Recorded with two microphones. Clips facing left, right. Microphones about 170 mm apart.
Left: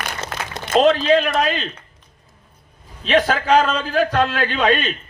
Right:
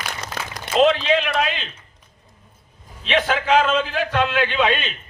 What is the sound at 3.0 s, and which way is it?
A man's voice, 40° left (ahead or behind).